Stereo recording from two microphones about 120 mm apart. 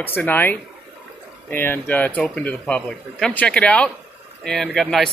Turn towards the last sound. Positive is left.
turn(degrees=5)  # may be behind; listen again after turning